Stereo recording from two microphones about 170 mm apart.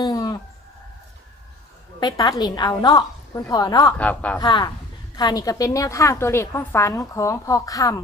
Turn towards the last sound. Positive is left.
turn(degrees=20)  # may be behind; listen again after turning